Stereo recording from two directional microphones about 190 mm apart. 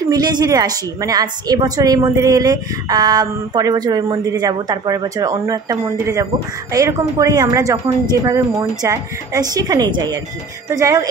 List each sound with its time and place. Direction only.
0.1 s a woman's voice: 20° right (ahead or behind)